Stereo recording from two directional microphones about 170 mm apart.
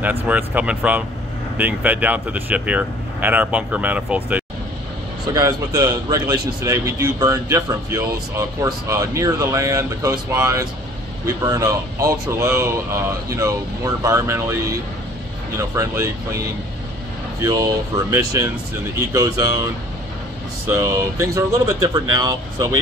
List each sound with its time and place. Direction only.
0.0 s speech: 10° right (ahead or behind)
5.3 s a man's voice: 20° right (ahead or behind)